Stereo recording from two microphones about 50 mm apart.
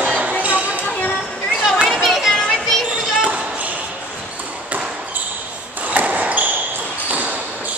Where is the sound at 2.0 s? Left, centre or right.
Centre.